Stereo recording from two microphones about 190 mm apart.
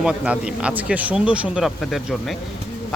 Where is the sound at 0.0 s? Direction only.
5° right (ahead or behind).